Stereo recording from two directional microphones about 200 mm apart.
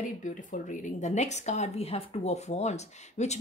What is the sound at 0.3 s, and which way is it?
A woman's voice, 40° left (ahead or behind).